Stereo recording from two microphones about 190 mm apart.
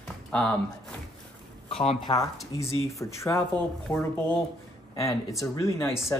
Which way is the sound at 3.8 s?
5° left (ahead or behind).